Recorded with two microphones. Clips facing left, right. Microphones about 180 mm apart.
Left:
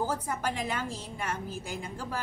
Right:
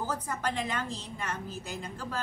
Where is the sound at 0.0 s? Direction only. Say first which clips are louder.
Left 2 dB; 10° left (ahead or behind).